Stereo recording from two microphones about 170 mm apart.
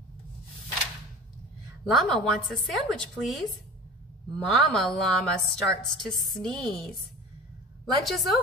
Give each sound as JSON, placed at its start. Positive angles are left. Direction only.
{"t": 1.9, "sound": "a woman's voice", "side_deg": 0}